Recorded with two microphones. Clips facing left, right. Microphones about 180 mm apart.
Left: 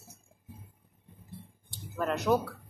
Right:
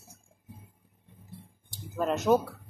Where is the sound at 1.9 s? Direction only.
20° right (ahead or behind).